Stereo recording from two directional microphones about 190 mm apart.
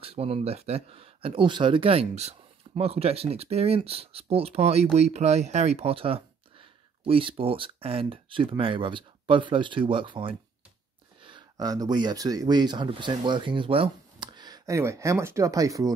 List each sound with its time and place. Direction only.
0.0 s speech: 30° right (ahead or behind)